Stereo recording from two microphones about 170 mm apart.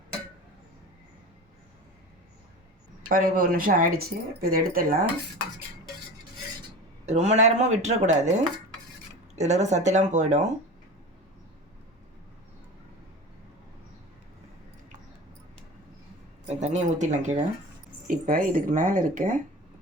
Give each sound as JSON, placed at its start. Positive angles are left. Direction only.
{"t": 3.1, "sound": "speech", "side_deg": -55}
{"t": 7.0, "sound": "speech", "side_deg": -40}
{"t": 16.5, "sound": "speech", "side_deg": -40}